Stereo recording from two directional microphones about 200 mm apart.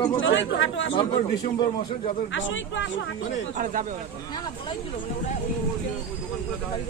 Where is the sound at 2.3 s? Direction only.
70° left (ahead or behind).